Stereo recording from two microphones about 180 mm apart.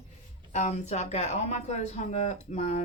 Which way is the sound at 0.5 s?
40° left (ahead or behind).